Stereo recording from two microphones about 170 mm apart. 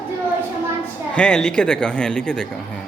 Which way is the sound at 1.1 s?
5° left (ahead or behind).